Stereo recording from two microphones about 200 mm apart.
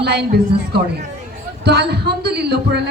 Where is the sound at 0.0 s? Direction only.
55° right (ahead or behind).